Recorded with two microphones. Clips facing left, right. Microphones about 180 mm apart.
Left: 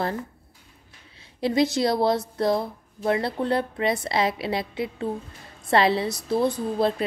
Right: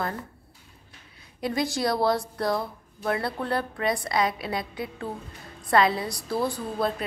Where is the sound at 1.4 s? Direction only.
25° left (ahead or behind).